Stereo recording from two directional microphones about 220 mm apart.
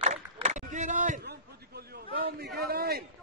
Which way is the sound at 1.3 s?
45° right (ahead or behind).